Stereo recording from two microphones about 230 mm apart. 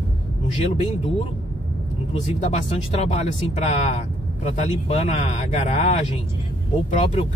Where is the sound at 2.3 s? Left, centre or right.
Left.